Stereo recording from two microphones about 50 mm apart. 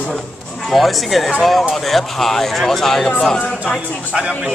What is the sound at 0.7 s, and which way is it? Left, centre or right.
Speech, centre.